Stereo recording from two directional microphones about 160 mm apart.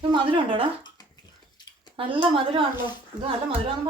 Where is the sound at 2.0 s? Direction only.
35° right (ahead or behind).